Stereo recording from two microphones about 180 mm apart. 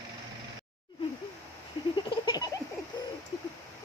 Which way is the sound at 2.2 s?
25° left (ahead or behind).